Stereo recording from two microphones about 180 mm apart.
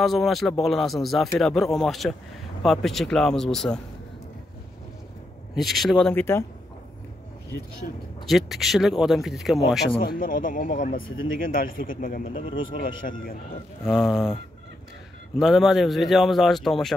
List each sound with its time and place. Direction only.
0.0 s speech: centre (ahead or behind)
5.5 s speech: centre (ahead or behind)
7.8 s speech: 45° left (ahead or behind)
8.3 s speech: centre (ahead or behind)
10.0 s speech: 50° left (ahead or behind)
12.4 s speech: 30° left (ahead or behind)
12.8 s speech: 50° left (ahead or behind)
13.8 s speech: 5° right (ahead or behind)
15.3 s speech: centre (ahead or behind)